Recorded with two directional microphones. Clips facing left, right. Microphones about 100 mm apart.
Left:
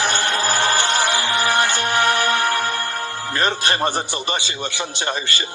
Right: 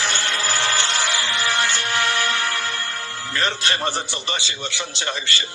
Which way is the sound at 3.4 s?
50° left (ahead or behind).